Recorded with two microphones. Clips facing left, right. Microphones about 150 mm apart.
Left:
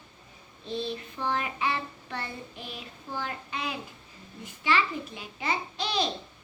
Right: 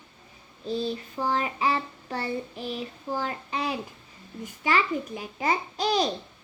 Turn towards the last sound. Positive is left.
turn(degrees=-40)  # may be behind; listen again after turning